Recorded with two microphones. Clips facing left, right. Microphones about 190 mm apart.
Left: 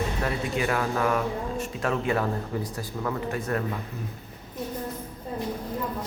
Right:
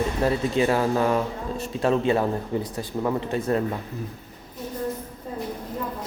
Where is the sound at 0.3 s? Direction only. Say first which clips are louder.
Right 7 dB; 30° right (ahead or behind).